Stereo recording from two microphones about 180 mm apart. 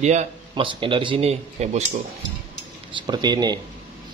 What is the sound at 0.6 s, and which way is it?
A man's voice, 30° right (ahead or behind).